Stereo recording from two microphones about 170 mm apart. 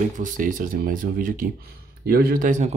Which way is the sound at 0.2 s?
50° right (ahead or behind).